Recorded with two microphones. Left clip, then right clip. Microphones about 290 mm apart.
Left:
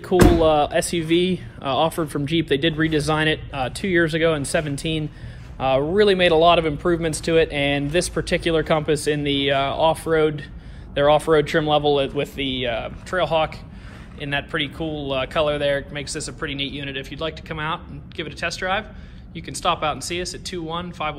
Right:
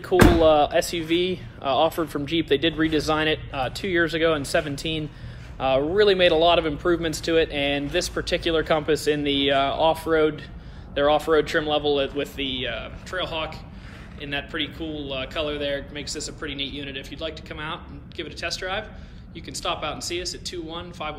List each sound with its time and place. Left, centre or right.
0.4 s a man's voice: left; by 21.2 s centre